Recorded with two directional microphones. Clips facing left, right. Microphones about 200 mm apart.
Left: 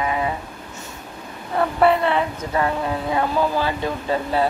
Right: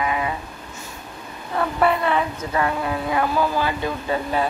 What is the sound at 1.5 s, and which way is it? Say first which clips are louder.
Speech: left 3 dB; 30° left (ahead or behind).